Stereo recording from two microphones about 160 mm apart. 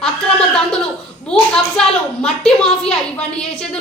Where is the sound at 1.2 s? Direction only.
5° left (ahead or behind).